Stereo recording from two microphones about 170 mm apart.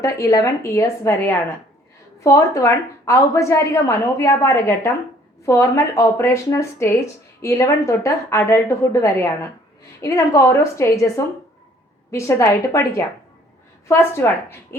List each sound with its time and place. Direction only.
0.0 s a woman's voice: 20° left (ahead or behind)
12.1 s a woman's voice: 15° left (ahead or behind)